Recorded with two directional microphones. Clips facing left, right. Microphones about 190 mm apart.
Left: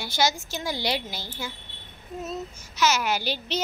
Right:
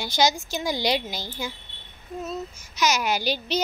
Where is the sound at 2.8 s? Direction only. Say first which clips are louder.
Even; 15° right (ahead or behind).